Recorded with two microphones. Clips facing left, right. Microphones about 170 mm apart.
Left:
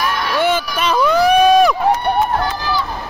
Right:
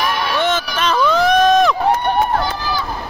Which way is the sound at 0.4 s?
10° left (ahead or behind).